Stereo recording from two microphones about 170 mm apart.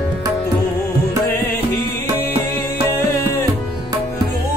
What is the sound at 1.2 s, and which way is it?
Music, 10° left (ahead or behind).